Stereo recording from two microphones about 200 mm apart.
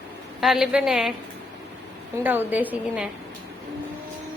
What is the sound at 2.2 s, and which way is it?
Speech, 10° right (ahead or behind).